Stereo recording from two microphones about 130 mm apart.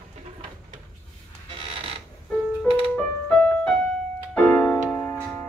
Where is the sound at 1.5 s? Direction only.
45° right (ahead or behind).